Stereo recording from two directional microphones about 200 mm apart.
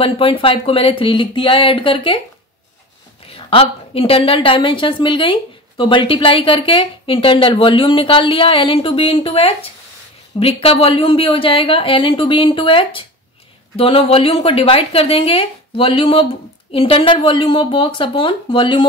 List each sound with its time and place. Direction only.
0.0 s a woman's voice: 25° left (ahead or behind)
3.3 s a woman's voice: 30° left (ahead or behind)